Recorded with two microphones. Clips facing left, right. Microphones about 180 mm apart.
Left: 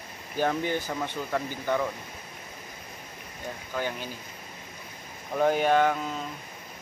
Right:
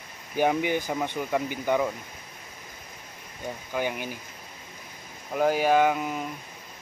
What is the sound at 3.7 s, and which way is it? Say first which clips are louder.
Speech: right 3 dB; 15° right (ahead or behind).